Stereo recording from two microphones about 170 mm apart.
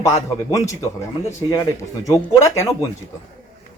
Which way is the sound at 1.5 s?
20° left (ahead or behind).